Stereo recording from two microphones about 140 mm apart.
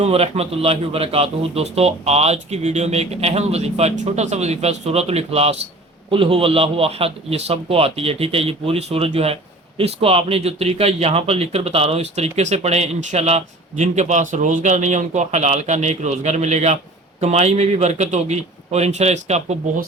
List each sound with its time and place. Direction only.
0.0 s a man's voice: 45° right (ahead or behind)